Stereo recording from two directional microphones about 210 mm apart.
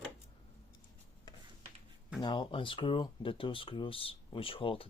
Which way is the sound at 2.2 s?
20° left (ahead or behind).